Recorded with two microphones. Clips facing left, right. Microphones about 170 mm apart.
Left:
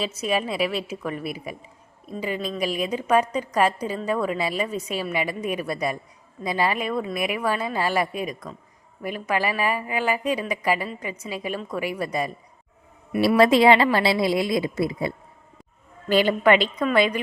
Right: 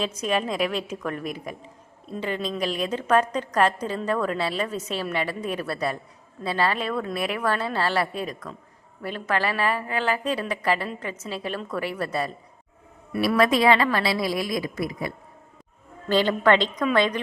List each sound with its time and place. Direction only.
0.0 s a woman's voice: 5° left (ahead or behind)
13.2 s a woman's voice: 30° left (ahead or behind)
16.0 s a woman's voice: 10° left (ahead or behind)